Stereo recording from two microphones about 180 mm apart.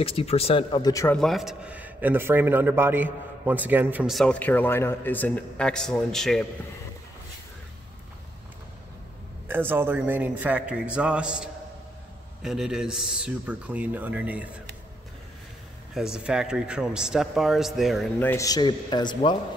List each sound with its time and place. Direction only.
0.0 s speech: 30° left (ahead or behind)
1.1 s a man's voice: centre (ahead or behind)
9.5 s a man's voice: 10° right (ahead or behind)
15.9 s a man's voice: 5° right (ahead or behind)
18.2 s speech: 15° left (ahead or behind)